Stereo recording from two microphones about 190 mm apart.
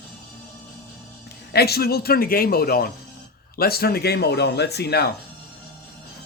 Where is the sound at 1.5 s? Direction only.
55° left (ahead or behind).